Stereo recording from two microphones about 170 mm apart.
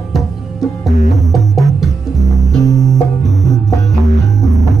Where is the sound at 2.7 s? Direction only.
20° left (ahead or behind).